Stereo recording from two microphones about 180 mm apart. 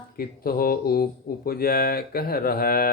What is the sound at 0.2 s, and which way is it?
Speech, 55° left (ahead or behind).